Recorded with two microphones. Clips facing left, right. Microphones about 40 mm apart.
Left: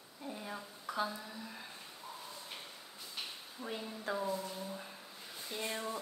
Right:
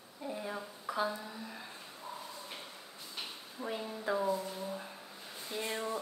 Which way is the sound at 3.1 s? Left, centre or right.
Centre.